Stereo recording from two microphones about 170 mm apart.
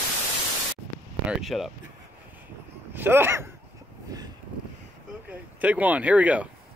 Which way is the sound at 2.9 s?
10° right (ahead or behind).